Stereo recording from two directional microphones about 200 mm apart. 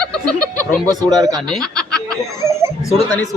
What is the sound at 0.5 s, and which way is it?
Speech, 15° right (ahead or behind).